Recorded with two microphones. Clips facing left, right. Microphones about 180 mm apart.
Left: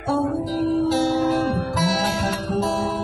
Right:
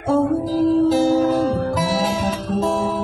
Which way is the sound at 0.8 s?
15° right (ahead or behind).